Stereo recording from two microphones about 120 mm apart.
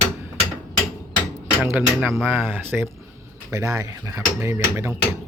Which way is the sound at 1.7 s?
15° right (ahead or behind).